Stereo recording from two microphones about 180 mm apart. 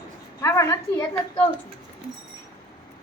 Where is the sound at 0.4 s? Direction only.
15° left (ahead or behind).